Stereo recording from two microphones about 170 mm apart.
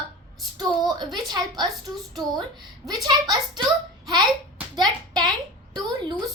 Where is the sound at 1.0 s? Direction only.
Centre (ahead or behind).